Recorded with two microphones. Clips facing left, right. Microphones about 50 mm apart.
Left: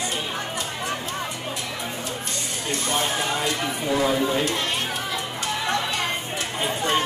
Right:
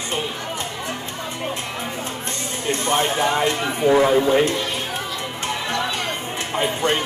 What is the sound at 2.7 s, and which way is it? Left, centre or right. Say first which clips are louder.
Speech: right 5 dB; right.